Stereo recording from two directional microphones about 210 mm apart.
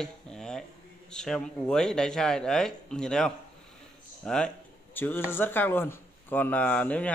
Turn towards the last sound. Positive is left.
turn(degrees=5)  # may be behind; listen again after turning